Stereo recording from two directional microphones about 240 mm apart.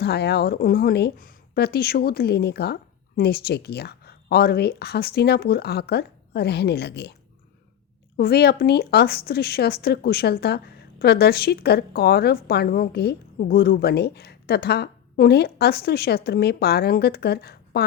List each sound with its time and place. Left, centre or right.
0.0 s a woman's voice: left